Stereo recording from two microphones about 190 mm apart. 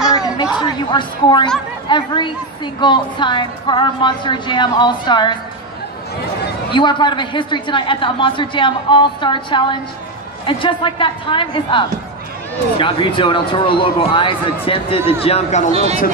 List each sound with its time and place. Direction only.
0.0 s a sound: 5° right (ahead or behind)
0.9 s a woman's voice: 25° left (ahead or behind)
6.7 s a woman's voice: 25° left (ahead or behind)
15.7 s speech: 35° right (ahead or behind)